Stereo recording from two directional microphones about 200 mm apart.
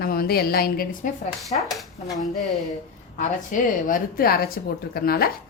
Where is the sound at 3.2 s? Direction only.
40° left (ahead or behind).